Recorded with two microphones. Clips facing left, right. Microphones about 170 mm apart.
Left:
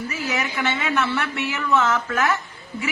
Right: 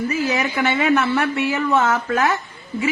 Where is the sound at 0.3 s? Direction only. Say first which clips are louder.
Right 5 dB; 45° right (ahead or behind).